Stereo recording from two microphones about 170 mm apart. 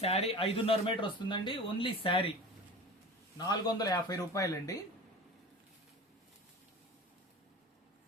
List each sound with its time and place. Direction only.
0.0 s speech: 35° left (ahead or behind)
3.3 s speech: 20° left (ahead or behind)